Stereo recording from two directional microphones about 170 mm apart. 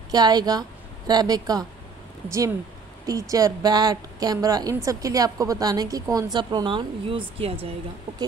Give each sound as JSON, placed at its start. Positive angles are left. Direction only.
{"t": 0.1, "sound": "a woman's voice", "side_deg": -25}
{"t": 3.1, "sound": "a woman's voice", "side_deg": -20}